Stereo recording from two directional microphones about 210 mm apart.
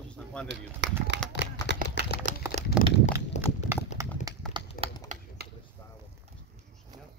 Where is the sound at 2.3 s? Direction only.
40° right (ahead or behind).